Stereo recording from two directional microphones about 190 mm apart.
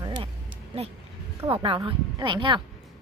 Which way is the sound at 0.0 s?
25° right (ahead or behind).